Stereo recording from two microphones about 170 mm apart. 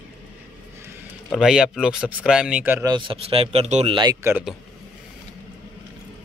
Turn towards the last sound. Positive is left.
turn(degrees=-25)  # may be behind; listen again after turning